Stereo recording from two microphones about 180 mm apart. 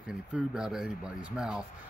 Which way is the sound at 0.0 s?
5° right (ahead or behind).